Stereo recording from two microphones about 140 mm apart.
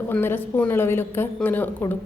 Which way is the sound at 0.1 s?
15° left (ahead or behind).